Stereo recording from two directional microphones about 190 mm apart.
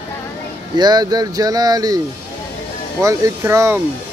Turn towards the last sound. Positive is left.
turn(degrees=-15)  # may be behind; listen again after turning